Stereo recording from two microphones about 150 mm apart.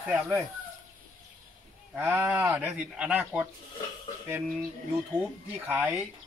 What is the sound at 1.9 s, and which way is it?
Speech, 15° right (ahead or behind).